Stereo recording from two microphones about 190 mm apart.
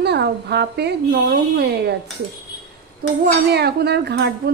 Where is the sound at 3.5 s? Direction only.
60° right (ahead or behind).